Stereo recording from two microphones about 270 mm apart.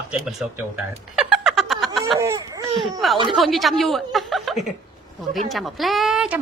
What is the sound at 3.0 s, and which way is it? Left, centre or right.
A woman's voice, centre.